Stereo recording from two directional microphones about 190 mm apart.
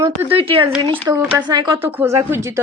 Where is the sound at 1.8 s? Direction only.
10° right (ahead or behind).